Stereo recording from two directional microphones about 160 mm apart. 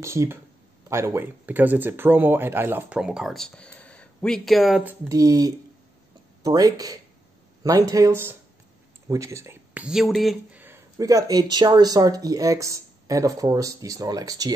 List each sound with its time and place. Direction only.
0.0 s speech: 15° right (ahead or behind)
5.0 s speech: 20° right (ahead or behind)
9.8 s speech: centre (ahead or behind)
10.6 s speech: 15° right (ahead or behind)